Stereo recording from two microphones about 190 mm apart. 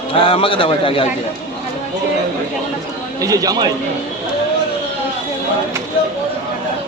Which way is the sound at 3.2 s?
20° right (ahead or behind).